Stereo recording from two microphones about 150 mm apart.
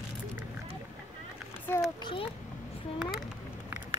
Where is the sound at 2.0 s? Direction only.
30° left (ahead or behind).